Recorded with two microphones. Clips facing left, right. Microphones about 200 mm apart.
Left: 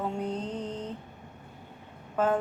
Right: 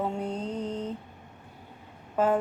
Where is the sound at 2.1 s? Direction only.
10° right (ahead or behind).